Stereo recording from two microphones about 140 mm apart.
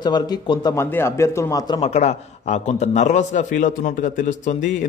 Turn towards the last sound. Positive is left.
turn(degrees=60)  # may be behind; listen again after turning